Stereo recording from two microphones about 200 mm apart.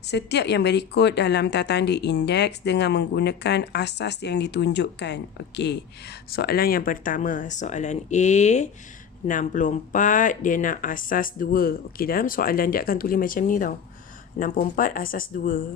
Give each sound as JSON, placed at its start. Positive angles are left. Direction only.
{"t": 0.1, "sound": "a woman's voice", "side_deg": 55}